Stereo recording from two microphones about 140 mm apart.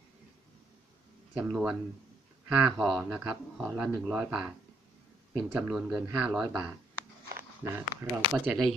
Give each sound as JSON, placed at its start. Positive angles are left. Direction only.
{"t": 1.3, "sound": "speech", "side_deg": -10}
{"t": 5.6, "sound": "speech", "side_deg": -5}
{"t": 7.6, "sound": "speech", "side_deg": -20}
{"t": 8.1, "sound": "speech", "side_deg": 0}